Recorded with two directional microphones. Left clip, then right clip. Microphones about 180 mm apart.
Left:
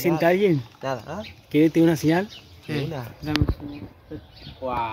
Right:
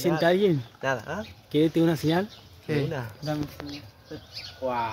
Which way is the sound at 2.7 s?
40° right (ahead or behind).